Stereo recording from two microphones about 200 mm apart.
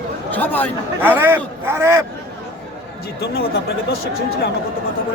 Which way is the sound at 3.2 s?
55° left (ahead or behind).